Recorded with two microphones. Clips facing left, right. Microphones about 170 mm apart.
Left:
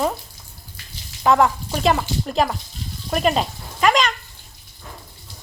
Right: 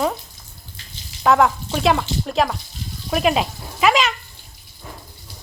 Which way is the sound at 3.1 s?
Centre (ahead or behind).